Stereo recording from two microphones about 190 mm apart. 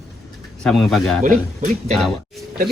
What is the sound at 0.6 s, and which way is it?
Speech, centre (ahead or behind).